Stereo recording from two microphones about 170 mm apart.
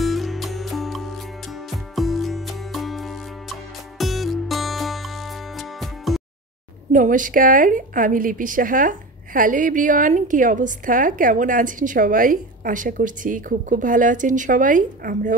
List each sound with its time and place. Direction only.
0.0 s music: centre (ahead or behind)
6.9 s a woman's voice: 50° right (ahead or behind)